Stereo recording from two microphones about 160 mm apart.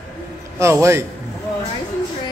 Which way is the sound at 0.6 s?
15° right (ahead or behind).